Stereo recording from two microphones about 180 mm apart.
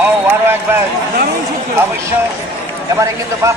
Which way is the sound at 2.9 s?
15° right (ahead or behind).